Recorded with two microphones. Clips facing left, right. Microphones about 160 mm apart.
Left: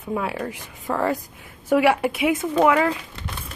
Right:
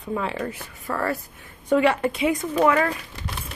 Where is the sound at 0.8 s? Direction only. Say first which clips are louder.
Left 3 dB; 15° left (ahead or behind).